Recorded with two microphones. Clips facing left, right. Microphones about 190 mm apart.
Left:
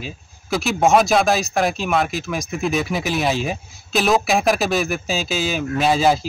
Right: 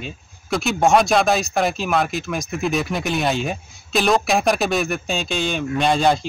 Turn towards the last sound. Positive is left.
turn(degrees=5)  # may be behind; listen again after turning